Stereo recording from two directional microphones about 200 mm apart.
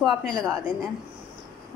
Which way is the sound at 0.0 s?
Centre (ahead or behind).